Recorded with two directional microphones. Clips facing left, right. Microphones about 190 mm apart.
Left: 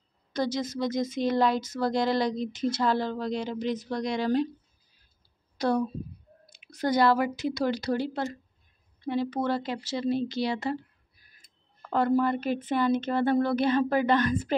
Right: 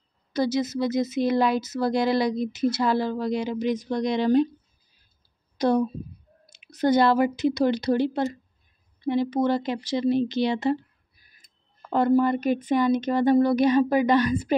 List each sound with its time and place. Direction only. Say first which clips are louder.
0.3 s speech: right 5 dB; 5° right (ahead or behind)
5.6 s speech: right 4 dB; 20° right (ahead or behind)
11.9 s speech: right 4 dB; 15° right (ahead or behind)